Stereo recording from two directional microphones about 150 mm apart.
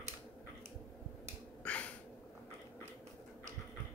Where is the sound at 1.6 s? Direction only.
10° left (ahead or behind).